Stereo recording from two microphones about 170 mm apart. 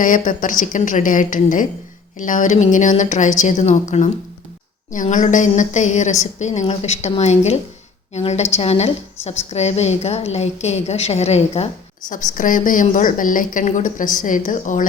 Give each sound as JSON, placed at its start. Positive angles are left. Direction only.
{"t": 0.0, "sound": "a woman's voice", "side_deg": 50}
{"t": 12.1, "sound": "a woman's voice", "side_deg": 50}